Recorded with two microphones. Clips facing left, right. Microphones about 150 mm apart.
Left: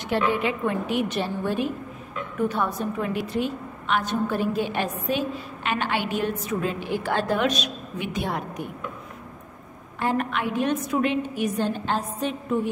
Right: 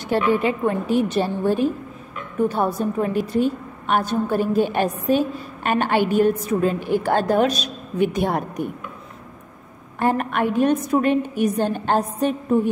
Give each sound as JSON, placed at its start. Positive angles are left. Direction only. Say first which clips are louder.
{"t": 0.0, "sound": "a woman's voice", "louder": "right 4 dB", "side_deg": -40}
{"t": 9.9, "sound": "a woman's voice", "louder": "right 5 dB", "side_deg": -50}